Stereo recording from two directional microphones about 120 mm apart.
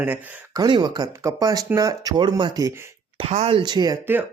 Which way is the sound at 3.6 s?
35° right (ahead or behind).